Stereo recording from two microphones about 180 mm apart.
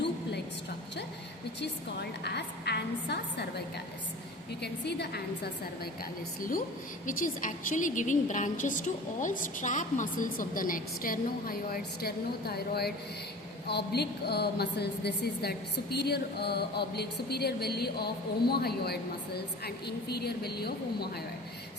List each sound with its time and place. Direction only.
1.6 s a woman's voice: 65° left (ahead or behind)
4.6 s a woman's voice: 65° left (ahead or behind)
7.0 s a woman's voice: 45° left (ahead or behind); by 21.1 s 60° left (ahead or behind)